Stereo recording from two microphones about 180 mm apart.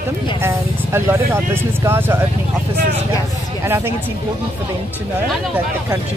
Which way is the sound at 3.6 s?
15° right (ahead or behind).